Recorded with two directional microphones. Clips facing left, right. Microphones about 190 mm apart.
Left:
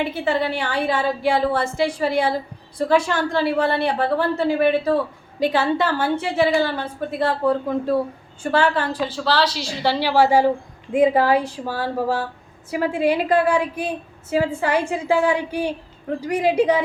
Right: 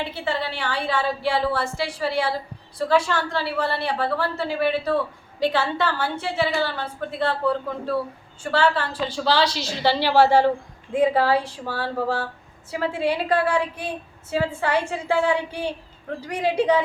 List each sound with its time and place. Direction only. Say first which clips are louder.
0.0 s a woman's voice: left 5 dB; 15° left (ahead or behind)
9.1 s a woman's voice: right 1 dB; 5° left (ahead or behind)